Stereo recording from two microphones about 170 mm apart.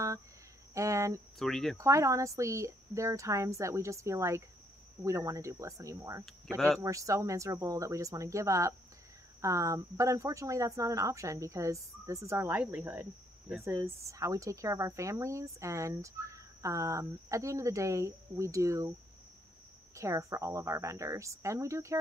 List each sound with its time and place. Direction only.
0.7 s a woman's voice: 20° right (ahead or behind)
1.4 s speech: centre (ahead or behind)
1.8 s a woman's voice: 20° right (ahead or behind)
20.0 s a woman's voice: 20° right (ahead or behind)